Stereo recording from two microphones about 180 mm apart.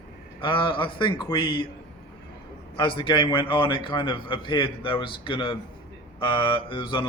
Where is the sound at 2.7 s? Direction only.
25° left (ahead or behind).